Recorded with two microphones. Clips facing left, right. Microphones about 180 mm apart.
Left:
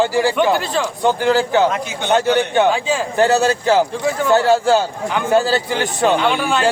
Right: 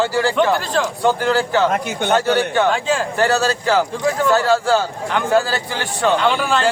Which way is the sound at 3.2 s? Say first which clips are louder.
Left 6 dB; 20° left (ahead or behind).